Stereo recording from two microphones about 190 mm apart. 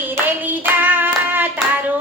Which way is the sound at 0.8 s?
10° right (ahead or behind).